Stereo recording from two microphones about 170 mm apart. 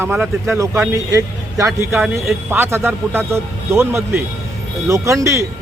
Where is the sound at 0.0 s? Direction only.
15° right (ahead or behind).